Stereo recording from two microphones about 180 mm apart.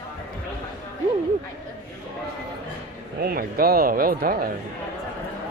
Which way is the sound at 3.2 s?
55° right (ahead or behind).